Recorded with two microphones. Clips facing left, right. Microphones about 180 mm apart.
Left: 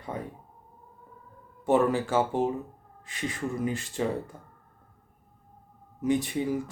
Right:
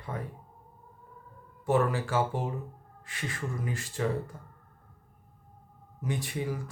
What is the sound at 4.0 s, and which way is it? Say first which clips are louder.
Speech: left 2 dB; 20° left (ahead or behind).